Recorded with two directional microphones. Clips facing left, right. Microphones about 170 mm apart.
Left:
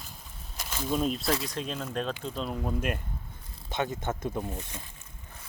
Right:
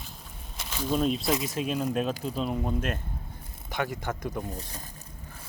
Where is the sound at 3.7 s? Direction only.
25° left (ahead or behind).